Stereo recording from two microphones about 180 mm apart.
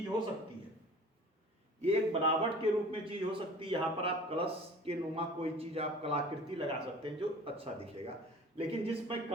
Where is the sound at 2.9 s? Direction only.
30° right (ahead or behind).